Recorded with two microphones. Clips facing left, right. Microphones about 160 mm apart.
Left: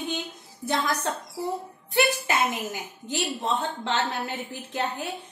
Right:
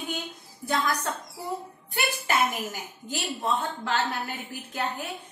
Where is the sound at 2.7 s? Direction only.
20° left (ahead or behind).